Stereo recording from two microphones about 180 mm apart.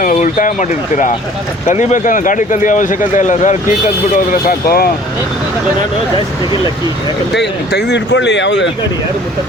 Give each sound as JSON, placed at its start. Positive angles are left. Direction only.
{"t": 0.0, "sound": "speech", "side_deg": 45}
{"t": 7.3, "sound": "speech", "side_deg": 70}